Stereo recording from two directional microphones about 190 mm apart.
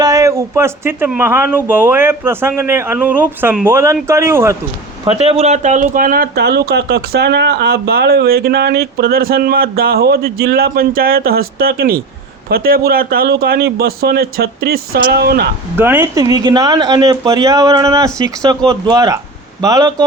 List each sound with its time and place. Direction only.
0.0 s speech: 20° right (ahead or behind)
5.1 s speech: 30° right (ahead or behind); by 15.4 s 55° right (ahead or behind)
15.8 s speech: 10° right (ahead or behind)